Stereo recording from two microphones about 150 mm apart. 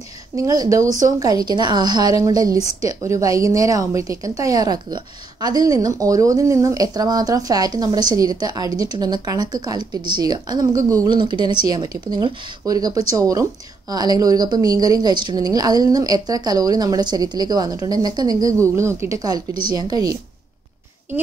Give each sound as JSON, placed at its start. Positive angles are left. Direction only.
{"t": 0.4, "sound": "a woman's voice", "side_deg": -25}